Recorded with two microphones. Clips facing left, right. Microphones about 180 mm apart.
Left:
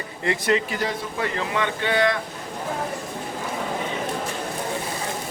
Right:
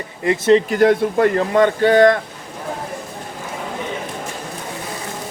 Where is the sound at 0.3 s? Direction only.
25° right (ahead or behind).